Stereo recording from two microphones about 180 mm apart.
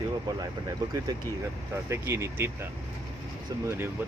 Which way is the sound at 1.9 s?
15° right (ahead or behind).